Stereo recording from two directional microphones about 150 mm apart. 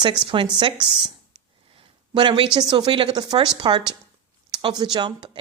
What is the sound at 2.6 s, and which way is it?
A woman's voice, 30° right (ahead or behind).